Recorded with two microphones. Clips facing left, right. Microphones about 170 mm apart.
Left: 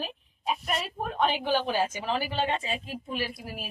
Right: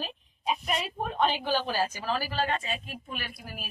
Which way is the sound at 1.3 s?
15° left (ahead or behind).